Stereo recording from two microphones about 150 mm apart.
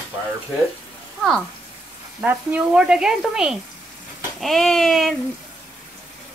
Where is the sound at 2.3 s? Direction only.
10° right (ahead or behind).